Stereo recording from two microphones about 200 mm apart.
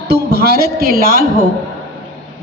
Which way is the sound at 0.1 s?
55° right (ahead or behind).